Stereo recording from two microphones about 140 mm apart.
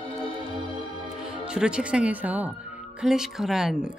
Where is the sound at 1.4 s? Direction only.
5° right (ahead or behind).